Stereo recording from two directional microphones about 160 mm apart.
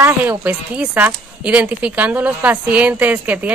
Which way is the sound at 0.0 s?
10° right (ahead or behind).